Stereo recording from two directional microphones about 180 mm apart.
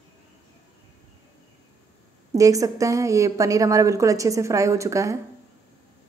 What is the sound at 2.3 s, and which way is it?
A woman's voice, 20° right (ahead or behind).